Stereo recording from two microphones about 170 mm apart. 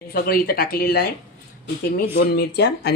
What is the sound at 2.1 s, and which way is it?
Speech, 70° left (ahead or behind).